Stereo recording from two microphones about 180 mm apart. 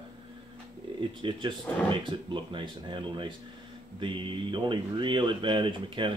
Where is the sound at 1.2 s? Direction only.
25° right (ahead or behind).